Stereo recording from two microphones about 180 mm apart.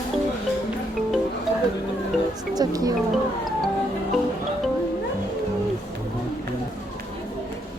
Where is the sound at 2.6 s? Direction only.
20° right (ahead or behind).